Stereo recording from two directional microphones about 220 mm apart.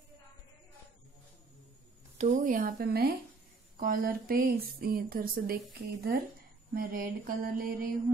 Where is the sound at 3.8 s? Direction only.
40° right (ahead or behind).